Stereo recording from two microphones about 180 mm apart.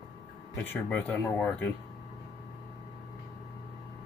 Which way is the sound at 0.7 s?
10° left (ahead or behind).